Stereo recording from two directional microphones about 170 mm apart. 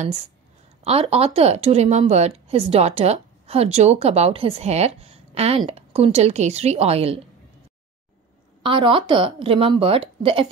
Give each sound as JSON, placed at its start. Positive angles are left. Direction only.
{"t": 0.8, "sound": "speech", "side_deg": -35}
{"t": 8.6, "sound": "speech", "side_deg": -30}